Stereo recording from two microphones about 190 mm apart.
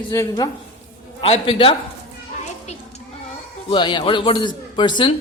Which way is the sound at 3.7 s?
25° left (ahead or behind).